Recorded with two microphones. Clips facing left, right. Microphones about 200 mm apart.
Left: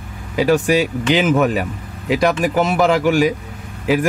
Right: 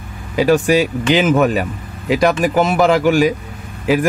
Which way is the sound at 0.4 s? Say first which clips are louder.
Right 2 dB; 45° right (ahead or behind).